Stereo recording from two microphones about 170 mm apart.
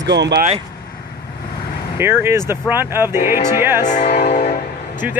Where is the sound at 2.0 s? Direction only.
15° right (ahead or behind).